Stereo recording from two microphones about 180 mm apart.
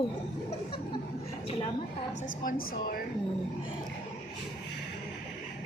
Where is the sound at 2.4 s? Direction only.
50° left (ahead or behind).